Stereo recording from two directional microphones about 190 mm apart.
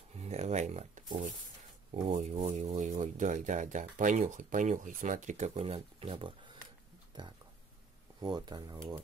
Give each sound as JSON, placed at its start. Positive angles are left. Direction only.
{"t": 0.2, "sound": "speech", "side_deg": -35}
{"t": 8.2, "sound": "speech", "side_deg": -20}